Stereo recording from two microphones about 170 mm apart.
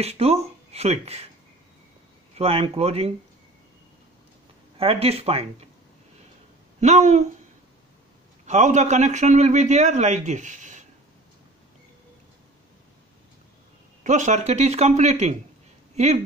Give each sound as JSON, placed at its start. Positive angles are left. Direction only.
{"t": 0.0, "sound": "speech", "side_deg": -35}
{"t": 2.3, "sound": "speech", "side_deg": -35}
{"t": 4.7, "sound": "speech", "side_deg": -35}
{"t": 6.8, "sound": "a man's voice", "side_deg": -40}
{"t": 8.5, "sound": "a man's voice", "side_deg": -45}
{"t": 14.0, "sound": "speech", "side_deg": -45}